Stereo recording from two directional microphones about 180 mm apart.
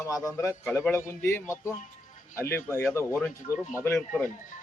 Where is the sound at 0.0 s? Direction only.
20° left (ahead or behind).